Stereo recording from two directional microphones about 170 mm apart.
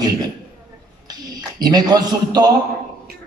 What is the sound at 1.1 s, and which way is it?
A man's voice, 25° right (ahead or behind).